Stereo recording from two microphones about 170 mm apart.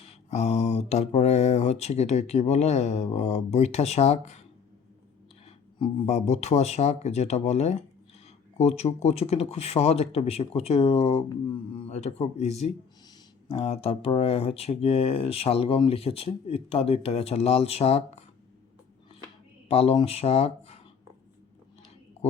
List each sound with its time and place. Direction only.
0.1 s speech: 40° left (ahead or behind)
5.5 s speech: 40° left (ahead or behind)
19.6 s speech: 35° left (ahead or behind)